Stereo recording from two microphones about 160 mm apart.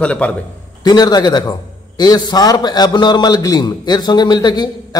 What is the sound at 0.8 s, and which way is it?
A man's voice, 25° left (ahead or behind).